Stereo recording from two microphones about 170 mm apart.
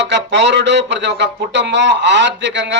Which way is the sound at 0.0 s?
90° right.